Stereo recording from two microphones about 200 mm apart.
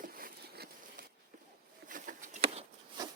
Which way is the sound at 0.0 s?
45° right (ahead or behind).